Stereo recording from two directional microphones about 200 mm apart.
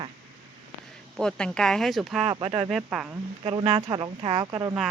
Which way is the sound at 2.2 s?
25° right (ahead or behind).